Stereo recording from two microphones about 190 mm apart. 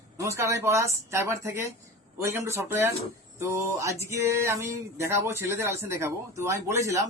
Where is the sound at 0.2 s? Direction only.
15° right (ahead or behind).